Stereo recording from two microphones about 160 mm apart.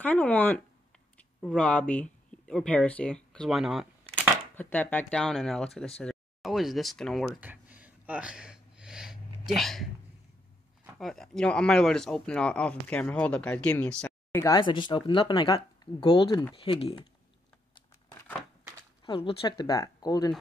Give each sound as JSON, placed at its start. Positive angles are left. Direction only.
{"t": 0.0, "sound": "speech", "side_deg": 10}
{"t": 4.6, "sound": "speech", "side_deg": 10}
{"t": 7.3, "sound": "gasp", "side_deg": -10}
{"t": 9.6, "sound": "speech", "side_deg": 0}
{"t": 11.0, "sound": "speech", "side_deg": 0}
{"t": 14.5, "sound": "speech", "side_deg": 30}
{"t": 19.0, "sound": "speech", "side_deg": 30}